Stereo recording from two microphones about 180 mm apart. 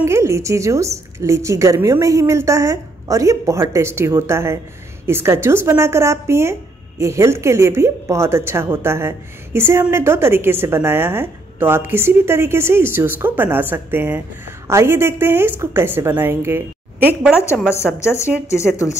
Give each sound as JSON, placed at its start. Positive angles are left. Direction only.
{"t": 0.0, "sound": "speech", "side_deg": -15}
{"t": 17.6, "sound": "a woman's voice", "side_deg": 15}